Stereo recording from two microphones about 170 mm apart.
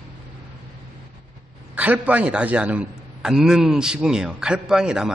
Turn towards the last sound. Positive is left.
turn(degrees=-5)  # may be behind; listen again after turning